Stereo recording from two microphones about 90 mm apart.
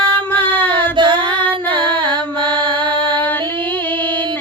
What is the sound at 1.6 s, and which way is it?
Female singing, 65° right (ahead or behind).